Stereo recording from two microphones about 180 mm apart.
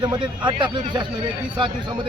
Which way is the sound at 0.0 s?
25° right (ahead or behind).